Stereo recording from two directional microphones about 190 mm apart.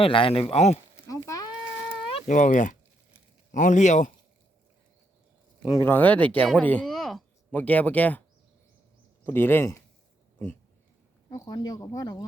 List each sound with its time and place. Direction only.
0.0 s speech: 30° left (ahead or behind)
1.1 s a sound: 15° left (ahead or behind)
2.2 s a man's voice: 45° left (ahead or behind)
5.6 s speech: 15° left (ahead or behind)
9.2 s speech: 10° left (ahead or behind)